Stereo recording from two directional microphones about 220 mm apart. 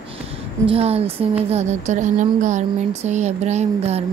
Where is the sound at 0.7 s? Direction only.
25° right (ahead or behind).